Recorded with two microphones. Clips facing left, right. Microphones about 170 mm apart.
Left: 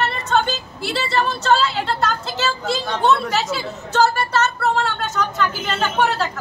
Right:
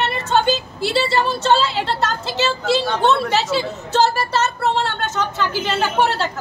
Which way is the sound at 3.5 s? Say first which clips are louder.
Right 2 dB; 30° right (ahead or behind).